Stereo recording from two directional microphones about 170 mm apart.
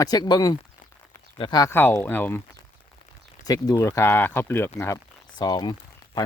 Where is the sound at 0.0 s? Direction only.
25° left (ahead or behind).